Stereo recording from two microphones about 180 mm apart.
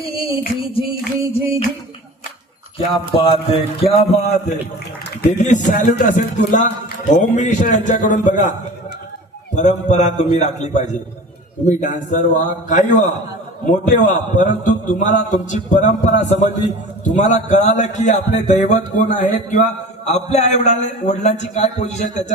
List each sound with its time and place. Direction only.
1.3 s a man's voice: 30° left (ahead or behind)
2.7 s a man's voice: 30° left (ahead or behind)
9.6 s a man's voice: 40° left (ahead or behind)